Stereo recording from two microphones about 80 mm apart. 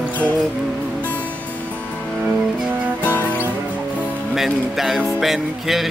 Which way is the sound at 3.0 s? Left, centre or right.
Left.